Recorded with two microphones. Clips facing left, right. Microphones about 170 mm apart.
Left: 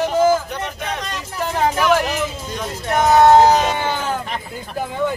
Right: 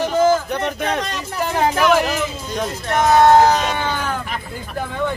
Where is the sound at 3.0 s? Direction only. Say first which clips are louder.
Left 1 dB; 20° left (ahead or behind).